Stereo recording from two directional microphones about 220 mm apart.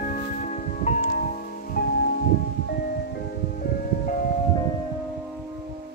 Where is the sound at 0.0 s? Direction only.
35° left (ahead or behind).